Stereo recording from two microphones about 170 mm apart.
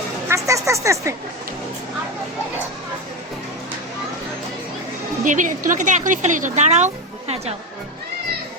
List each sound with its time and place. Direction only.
0.3 s speech: 20° right (ahead or behind)
5.2 s a woman's voice: 50° right (ahead or behind)